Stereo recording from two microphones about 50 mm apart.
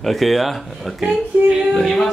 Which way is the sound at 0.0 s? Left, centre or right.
Centre.